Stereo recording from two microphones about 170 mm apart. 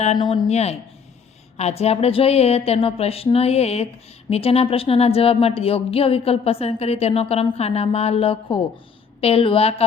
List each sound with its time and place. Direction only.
0.2 s a woman's voice: 35° left (ahead or behind)